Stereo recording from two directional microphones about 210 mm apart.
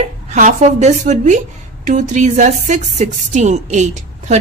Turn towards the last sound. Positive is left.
turn(degrees=-35)  # may be behind; listen again after turning